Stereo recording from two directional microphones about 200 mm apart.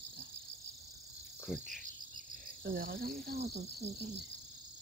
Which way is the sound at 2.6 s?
50° right (ahead or behind).